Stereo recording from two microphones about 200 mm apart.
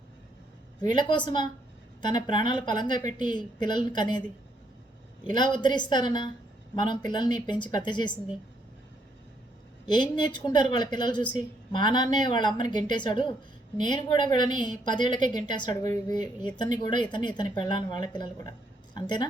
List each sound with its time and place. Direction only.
0.8 s a woman's voice: 20° left (ahead or behind)
5.2 s a woman's voice: 20° left (ahead or behind)
9.8 s a woman's voice: 20° left (ahead or behind)